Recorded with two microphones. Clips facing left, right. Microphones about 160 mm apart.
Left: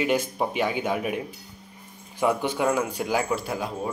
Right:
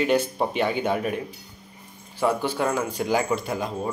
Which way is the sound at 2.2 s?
15° left (ahead or behind).